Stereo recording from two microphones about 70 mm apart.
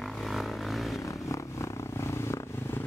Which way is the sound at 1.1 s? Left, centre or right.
Left.